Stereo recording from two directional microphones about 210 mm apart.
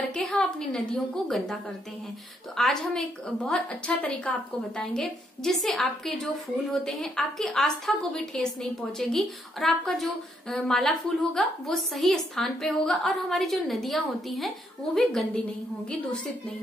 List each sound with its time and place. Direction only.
0.1 s a woman's voice: 5° left (ahead or behind)